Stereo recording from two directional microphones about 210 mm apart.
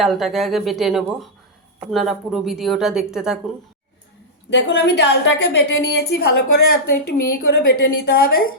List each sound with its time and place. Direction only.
0.0 s speech: centre (ahead or behind)
4.4 s a woman's voice: 60° left (ahead or behind)